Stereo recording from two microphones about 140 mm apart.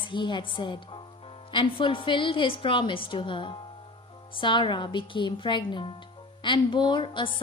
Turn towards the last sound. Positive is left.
turn(degrees=35)  # may be behind; listen again after turning